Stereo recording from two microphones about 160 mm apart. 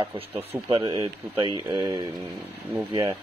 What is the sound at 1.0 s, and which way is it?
Speech, 30° right (ahead or behind).